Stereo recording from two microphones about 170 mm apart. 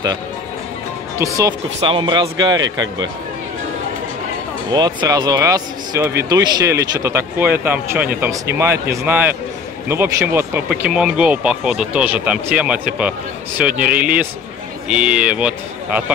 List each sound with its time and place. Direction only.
1.1 s speech: 20° right (ahead or behind)
1.8 s speech: 30° right (ahead or behind)
4.7 s speech: 20° right (ahead or behind); by 16.0 s 5° right (ahead or behind)